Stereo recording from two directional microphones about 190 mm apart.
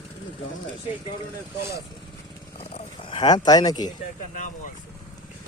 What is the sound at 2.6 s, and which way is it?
Speech, 30° left (ahead or behind).